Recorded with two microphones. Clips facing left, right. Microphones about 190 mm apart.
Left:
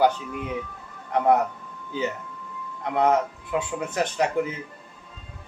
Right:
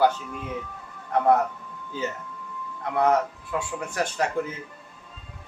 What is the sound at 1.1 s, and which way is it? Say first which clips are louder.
A man's voice: even; 20° left (ahead or behind).